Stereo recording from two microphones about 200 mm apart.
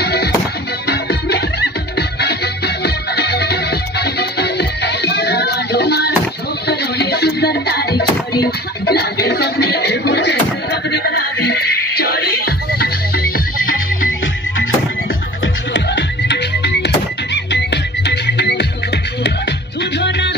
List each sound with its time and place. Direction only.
0.0 s music: 55° left (ahead or behind)
15.4 s music: 60° left (ahead or behind)